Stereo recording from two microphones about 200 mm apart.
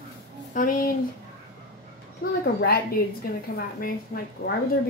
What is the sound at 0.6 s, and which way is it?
Speech, 45° left (ahead or behind).